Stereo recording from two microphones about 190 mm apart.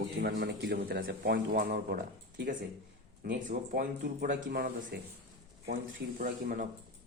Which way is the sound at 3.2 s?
45° right (ahead or behind).